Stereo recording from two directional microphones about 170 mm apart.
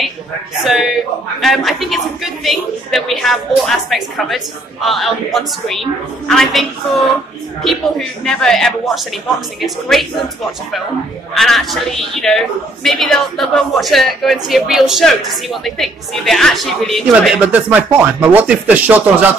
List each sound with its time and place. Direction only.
0.6 s a man's voice: centre (ahead or behind)
11.3 s a man's voice: centre (ahead or behind)